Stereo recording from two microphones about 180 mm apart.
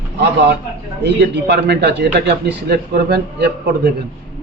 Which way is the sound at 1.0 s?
70° right (ahead or behind).